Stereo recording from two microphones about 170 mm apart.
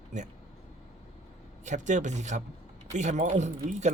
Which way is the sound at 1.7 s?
45° right (ahead or behind).